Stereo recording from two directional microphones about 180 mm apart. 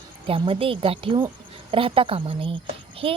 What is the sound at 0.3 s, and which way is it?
A woman's voice, 30° right (ahead or behind).